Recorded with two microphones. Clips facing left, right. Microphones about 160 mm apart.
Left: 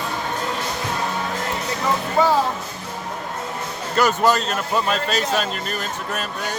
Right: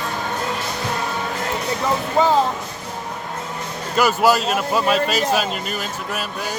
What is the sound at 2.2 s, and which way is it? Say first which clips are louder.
Music: right 1 dB; 20° right (ahead or behind).